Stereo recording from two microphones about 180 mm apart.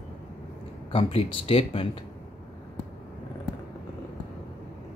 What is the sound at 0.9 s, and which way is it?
Speech, 30° left (ahead or behind).